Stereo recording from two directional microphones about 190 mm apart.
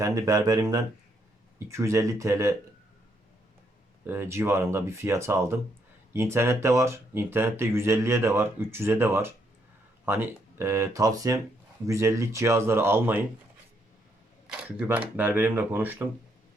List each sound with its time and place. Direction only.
0.0 s speech: 15° right (ahead or behind)
4.0 s speech: 10° right (ahead or behind)
14.4 s speech: 5° right (ahead or behind)